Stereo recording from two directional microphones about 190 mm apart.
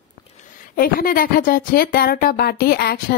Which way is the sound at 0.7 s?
50° left (ahead or behind).